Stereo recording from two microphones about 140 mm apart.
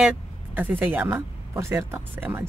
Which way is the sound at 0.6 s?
15° right (ahead or behind).